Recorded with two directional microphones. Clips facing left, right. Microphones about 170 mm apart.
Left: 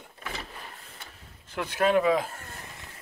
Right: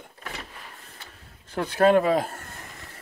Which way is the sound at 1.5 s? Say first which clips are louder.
Right 5 dB; 35° right (ahead or behind).